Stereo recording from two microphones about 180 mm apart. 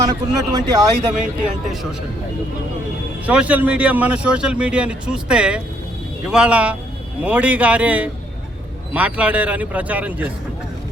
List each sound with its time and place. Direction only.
0.1 s a man's voice: 20° right (ahead or behind)
1.1 s speech: 5° right (ahead or behind)
3.2 s speech: 10° right (ahead or behind)